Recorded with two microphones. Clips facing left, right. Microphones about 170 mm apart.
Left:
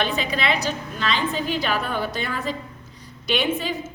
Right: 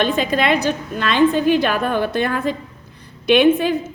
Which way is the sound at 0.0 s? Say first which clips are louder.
Right 6 dB; 45° right (ahead or behind).